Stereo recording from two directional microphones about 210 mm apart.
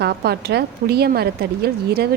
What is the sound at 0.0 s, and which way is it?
A woman's voice, 50° right (ahead or behind).